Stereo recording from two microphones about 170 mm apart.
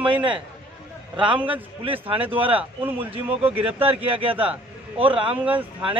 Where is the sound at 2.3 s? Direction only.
10° right (ahead or behind).